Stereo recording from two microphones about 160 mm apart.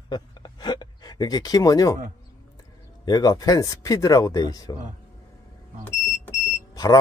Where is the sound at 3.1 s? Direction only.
25° left (ahead or behind).